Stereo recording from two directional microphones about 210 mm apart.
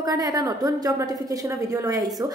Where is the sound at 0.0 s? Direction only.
15° right (ahead or behind).